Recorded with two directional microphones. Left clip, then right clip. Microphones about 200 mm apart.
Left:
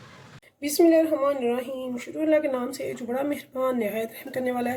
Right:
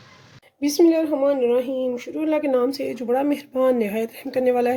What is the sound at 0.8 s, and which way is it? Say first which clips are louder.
Speech: right 1 dB; 45° right (ahead or behind).